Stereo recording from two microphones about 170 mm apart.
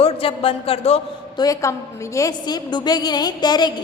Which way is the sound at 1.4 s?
20° left (ahead or behind).